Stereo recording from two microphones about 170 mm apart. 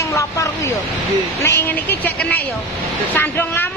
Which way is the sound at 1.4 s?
15° left (ahead or behind).